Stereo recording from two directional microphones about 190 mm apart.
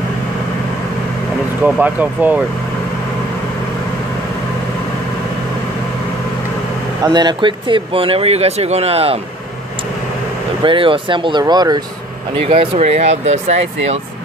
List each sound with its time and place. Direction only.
1.6 s speech: 10° right (ahead or behind)
7.0 s speech: 20° right (ahead or behind)
10.6 s speech: 25° right (ahead or behind)